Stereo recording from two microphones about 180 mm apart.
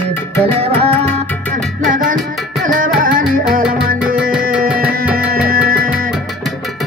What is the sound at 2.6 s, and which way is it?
Music, 50° right (ahead or behind).